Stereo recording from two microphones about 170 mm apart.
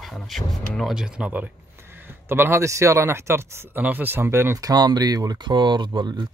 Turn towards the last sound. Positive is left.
turn(degrees=-25)  # may be behind; listen again after turning